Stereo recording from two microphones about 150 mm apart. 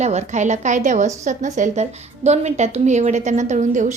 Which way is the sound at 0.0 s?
50° right (ahead or behind).